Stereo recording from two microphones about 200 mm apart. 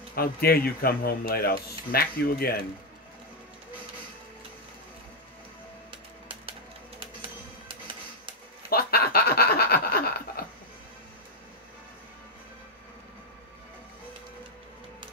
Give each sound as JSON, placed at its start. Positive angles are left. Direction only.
{"t": 0.1, "sound": "a man's voice", "side_deg": 50}
{"t": 5.9, "sound": "music", "side_deg": -25}
{"t": 8.6, "sound": "snicker", "side_deg": 50}